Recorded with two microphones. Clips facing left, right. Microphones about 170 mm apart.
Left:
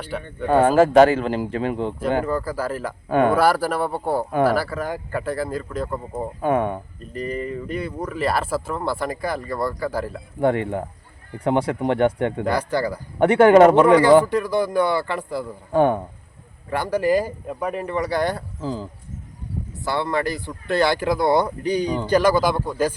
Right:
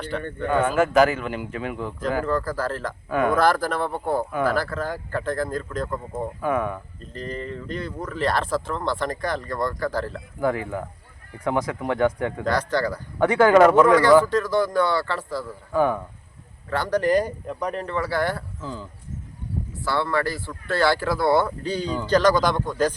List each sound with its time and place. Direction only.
0.4 s a man's voice: 35° left (ahead or behind)
2.2 s speech: 10° left (ahead or behind)
3.1 s a man's voice: 30° left (ahead or behind)
3.3 s speech: 10° left (ahead or behind)
6.4 s speech: 30° left (ahead or behind)
7.0 s speech: 10° left (ahead or behind)
10.4 s speech: 30° left (ahead or behind)
12.5 s speech: 10° left (ahead or behind)
13.1 s speech: 25° left (ahead or behind)
14.2 s speech: 15° left (ahead or behind)
15.7 s speech: 30° left (ahead or behind)
16.6 s speech: 10° left (ahead or behind)
18.6 s a man's voice: 35° left (ahead or behind)
19.8 s speech: 20° left (ahead or behind)